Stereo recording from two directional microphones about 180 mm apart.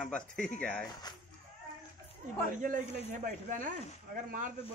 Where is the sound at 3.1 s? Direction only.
45° right (ahead or behind).